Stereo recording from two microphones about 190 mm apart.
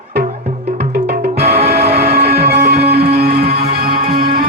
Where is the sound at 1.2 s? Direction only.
35° right (ahead or behind).